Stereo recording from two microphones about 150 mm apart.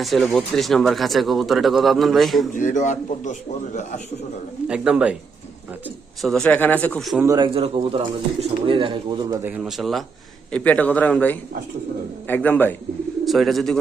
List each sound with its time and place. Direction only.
0.0 s speech: centre (ahead or behind)
2.6 s a man's voice: 60° left (ahead or behind)
4.7 s speech: 5° right (ahead or behind)
6.2 s speech: 5° left (ahead or behind)
7.3 s speech: 30° right (ahead or behind)
9.4 s speech: 10° right (ahead or behind); by 12.7 s 10° left (ahead or behind)
13.2 s speech: centre (ahead or behind)